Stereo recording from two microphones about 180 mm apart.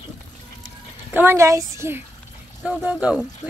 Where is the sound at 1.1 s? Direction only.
15° right (ahead or behind).